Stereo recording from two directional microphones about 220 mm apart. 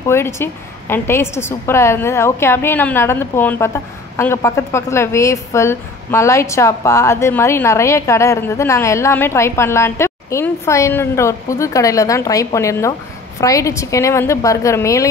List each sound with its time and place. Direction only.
0.0 s a woman's voice: 10° left (ahead or behind)